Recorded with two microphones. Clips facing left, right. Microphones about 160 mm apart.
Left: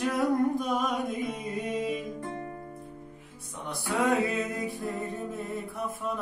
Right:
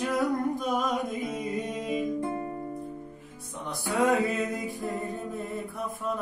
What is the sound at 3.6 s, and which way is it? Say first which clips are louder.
Music: right 2 dB; centre (ahead or behind).